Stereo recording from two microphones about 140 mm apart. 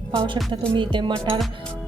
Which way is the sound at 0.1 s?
35° right (ahead or behind).